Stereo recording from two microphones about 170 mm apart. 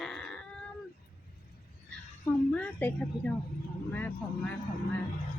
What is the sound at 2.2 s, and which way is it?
A woman's voice, 10° left (ahead or behind).